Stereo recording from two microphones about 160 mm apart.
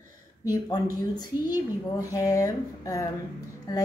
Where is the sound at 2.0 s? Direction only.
20° left (ahead or behind).